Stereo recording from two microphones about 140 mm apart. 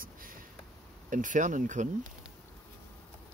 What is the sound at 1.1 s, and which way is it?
Speech, 70° right (ahead or behind).